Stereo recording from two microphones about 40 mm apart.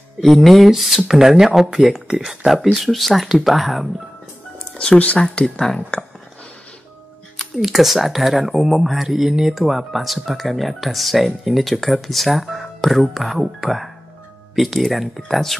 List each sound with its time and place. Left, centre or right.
0.2 s speech: centre
4.9 s speech: left
5.8 s speech: left
7.5 s speech: centre
14.5 s speech: centre